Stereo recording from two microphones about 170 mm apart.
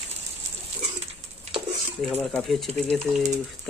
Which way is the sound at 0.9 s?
40° right (ahead or behind).